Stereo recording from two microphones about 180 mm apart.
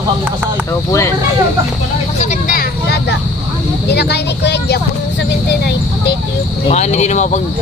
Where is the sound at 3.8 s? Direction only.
70° left (ahead or behind).